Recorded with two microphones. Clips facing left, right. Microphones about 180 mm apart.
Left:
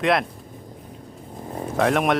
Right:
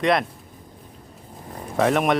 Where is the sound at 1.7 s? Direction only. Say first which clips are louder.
Right 1 dB; centre (ahead or behind).